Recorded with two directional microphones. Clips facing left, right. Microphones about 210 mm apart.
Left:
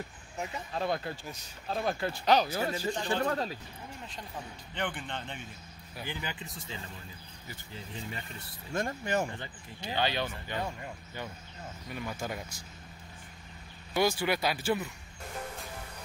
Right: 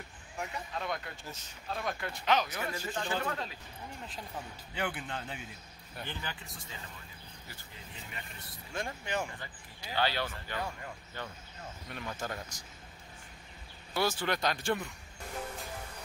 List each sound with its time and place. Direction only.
0.4 s speech: 20° left (ahead or behind); by 3.5 s 40° left (ahead or behind)
4.7 s speech: 5° right (ahead or behind)
5.9 s speech: 10° left (ahead or behind)
8.7 s speech: 45° left (ahead or behind)
9.4 s speech: 25° left (ahead or behind)
13.9 s speech: 10° left (ahead or behind)